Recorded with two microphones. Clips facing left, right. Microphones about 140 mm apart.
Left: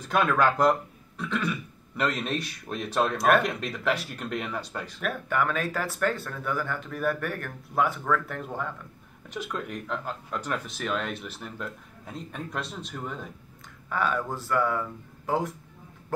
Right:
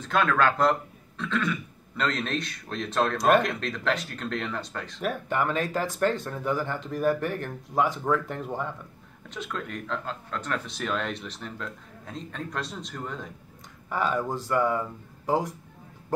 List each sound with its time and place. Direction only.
0.0 s speech: 15° left (ahead or behind)
3.2 s speech: 15° right (ahead or behind)
3.4 s speech: 10° left (ahead or behind)
5.0 s speech: 20° right (ahead or behind)
9.3 s speech: 10° left (ahead or behind)
13.8 s speech: 15° right (ahead or behind)